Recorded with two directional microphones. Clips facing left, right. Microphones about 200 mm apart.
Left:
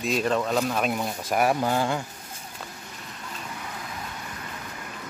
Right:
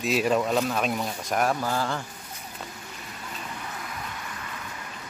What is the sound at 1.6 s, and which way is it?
Speech, 20° left (ahead or behind).